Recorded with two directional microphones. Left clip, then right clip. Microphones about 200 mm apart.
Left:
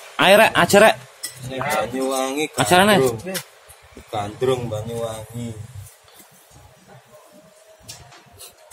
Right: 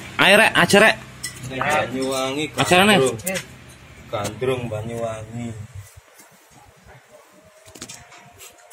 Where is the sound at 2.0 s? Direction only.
25° left (ahead or behind).